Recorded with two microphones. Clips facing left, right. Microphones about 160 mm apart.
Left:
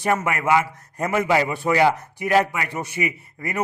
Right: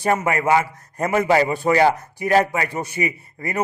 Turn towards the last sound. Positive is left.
turn(degrees=-35)  # may be behind; listen again after turning